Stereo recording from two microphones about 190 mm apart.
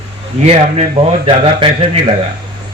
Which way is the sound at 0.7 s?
30° right (ahead or behind).